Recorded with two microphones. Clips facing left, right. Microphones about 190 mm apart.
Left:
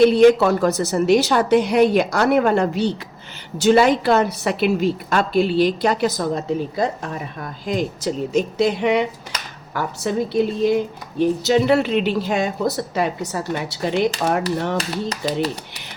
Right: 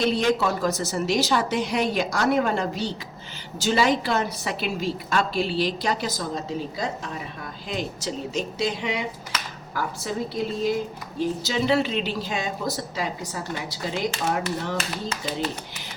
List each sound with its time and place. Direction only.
0.2 s a woman's voice: 65° left (ahead or behind)
14.8 s speech: 35° left (ahead or behind)